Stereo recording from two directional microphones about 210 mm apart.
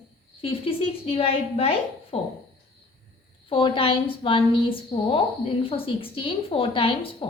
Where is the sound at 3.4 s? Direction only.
25° left (ahead or behind).